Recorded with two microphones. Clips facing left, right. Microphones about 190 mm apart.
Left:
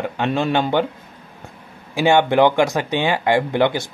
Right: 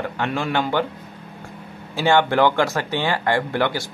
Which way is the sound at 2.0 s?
15° left (ahead or behind).